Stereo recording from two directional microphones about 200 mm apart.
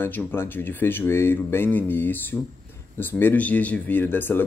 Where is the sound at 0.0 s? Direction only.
10° left (ahead or behind).